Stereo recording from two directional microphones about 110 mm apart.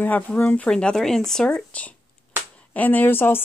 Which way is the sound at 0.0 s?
15° left (ahead or behind).